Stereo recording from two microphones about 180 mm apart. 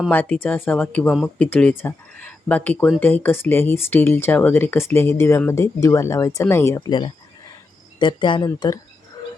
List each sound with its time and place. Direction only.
0.1 s speech: 10° left (ahead or behind)